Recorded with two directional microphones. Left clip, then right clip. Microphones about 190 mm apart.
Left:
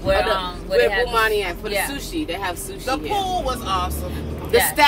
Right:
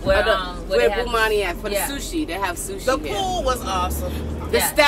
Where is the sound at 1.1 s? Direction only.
10° right (ahead or behind).